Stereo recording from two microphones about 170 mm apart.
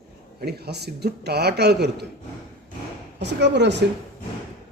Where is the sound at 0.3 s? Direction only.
70° right (ahead or behind).